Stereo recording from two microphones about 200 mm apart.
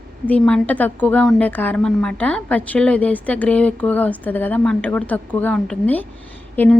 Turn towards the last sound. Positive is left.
turn(degrees=10)  # may be behind; listen again after turning